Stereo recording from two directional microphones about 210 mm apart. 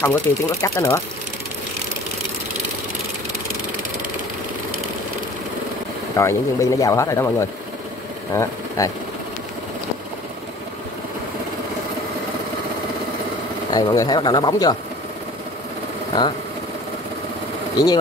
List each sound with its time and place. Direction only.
0.0 s speech: 15° left (ahead or behind)
6.1 s speech: 15° left (ahead or behind)
13.7 s speech: 20° left (ahead or behind)